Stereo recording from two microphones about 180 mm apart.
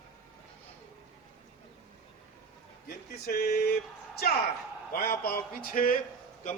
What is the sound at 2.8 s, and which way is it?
Speech, 55° left (ahead or behind).